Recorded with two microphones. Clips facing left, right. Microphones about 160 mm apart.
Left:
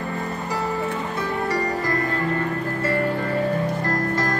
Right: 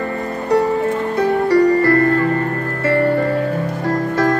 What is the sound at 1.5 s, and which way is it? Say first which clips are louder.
Music: right 14 dB; 70° right (ahead or behind).